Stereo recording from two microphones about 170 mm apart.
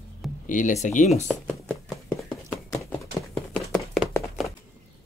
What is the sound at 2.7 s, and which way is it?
Horse, 15° left (ahead or behind).